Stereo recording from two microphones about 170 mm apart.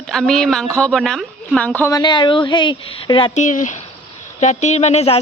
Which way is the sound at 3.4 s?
45° left (ahead or behind).